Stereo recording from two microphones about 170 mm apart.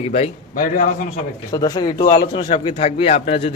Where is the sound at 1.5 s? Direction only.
25° left (ahead or behind).